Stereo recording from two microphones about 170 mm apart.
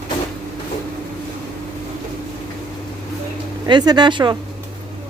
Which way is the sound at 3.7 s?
25° right (ahead or behind).